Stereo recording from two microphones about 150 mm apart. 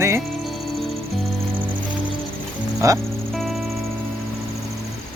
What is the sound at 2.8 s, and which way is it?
Speech, 20° right (ahead or behind).